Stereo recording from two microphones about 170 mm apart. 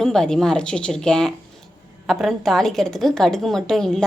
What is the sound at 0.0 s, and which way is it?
A woman's voice, 5° left (ahead or behind).